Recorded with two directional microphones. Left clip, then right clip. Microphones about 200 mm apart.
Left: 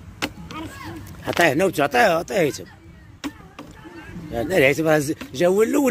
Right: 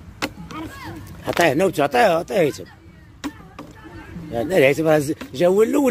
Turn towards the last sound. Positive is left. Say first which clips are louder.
# right 2 dB
turn(degrees=-5)  # may be behind; listen again after turning